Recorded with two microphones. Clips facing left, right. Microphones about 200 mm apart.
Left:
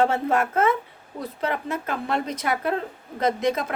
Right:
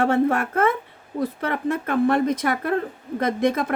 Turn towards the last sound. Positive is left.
turn(degrees=-55)  # may be behind; listen again after turning